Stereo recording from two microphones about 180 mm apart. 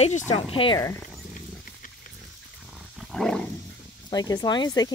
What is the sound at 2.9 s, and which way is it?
Roaring cats, centre (ahead or behind).